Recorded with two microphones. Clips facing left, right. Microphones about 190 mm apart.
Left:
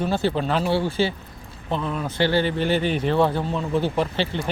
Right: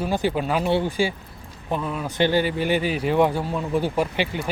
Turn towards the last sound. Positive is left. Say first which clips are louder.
# even
turn(degrees=-10)  # may be behind; listen again after turning